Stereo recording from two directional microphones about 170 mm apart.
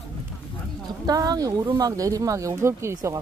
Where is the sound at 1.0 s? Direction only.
20° right (ahead or behind).